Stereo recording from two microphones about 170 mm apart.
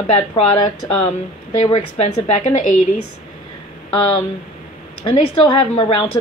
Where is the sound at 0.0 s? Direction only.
35° left (ahead or behind).